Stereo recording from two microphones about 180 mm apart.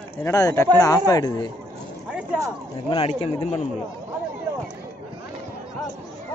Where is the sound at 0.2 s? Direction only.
15° left (ahead or behind).